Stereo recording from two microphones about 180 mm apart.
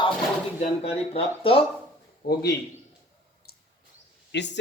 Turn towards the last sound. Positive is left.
turn(degrees=75)  # may be behind; listen again after turning